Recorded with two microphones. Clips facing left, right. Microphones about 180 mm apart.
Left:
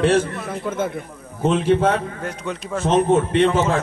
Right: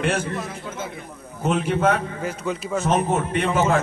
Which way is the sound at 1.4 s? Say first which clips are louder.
Left 4 dB; 30° left (ahead or behind).